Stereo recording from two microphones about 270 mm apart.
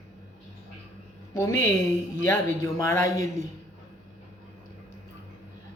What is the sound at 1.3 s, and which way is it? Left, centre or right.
A woman's voice, centre.